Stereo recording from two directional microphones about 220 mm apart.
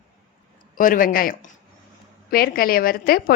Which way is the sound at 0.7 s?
40° left (ahead or behind).